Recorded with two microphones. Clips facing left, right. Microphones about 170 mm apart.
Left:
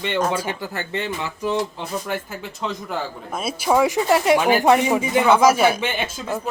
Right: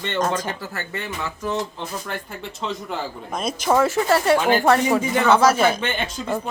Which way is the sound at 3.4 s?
5° left (ahead or behind).